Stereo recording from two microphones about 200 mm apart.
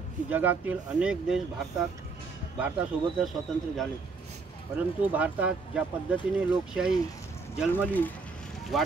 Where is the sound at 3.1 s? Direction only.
Centre (ahead or behind).